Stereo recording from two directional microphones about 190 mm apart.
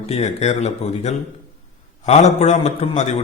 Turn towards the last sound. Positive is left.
turn(degrees=35)  # may be behind; listen again after turning